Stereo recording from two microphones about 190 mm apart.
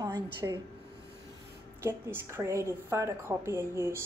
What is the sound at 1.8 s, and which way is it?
A woman's voice, 15° right (ahead or behind).